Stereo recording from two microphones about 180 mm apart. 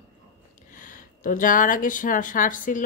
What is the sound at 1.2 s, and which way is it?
Speech, 45° left (ahead or behind).